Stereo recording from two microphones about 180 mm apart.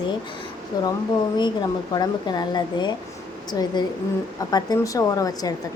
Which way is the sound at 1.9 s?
25° left (ahead or behind).